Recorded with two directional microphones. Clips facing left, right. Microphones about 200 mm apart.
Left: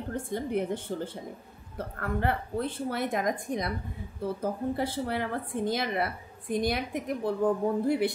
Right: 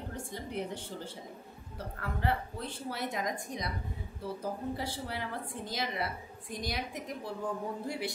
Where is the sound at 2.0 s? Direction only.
55° left (ahead or behind).